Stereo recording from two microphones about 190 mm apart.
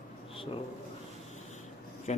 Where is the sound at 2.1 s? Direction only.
35° left (ahead or behind).